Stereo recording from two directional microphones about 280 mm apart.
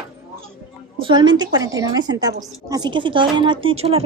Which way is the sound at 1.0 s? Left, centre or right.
Centre.